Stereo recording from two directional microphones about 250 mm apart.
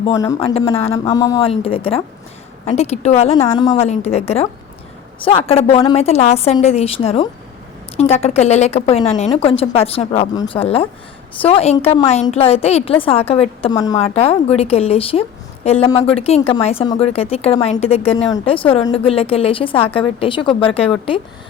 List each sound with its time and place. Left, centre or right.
0.0 s a woman's voice: centre